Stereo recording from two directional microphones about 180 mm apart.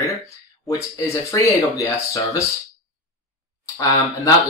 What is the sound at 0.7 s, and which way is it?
Speech, 15° left (ahead or behind).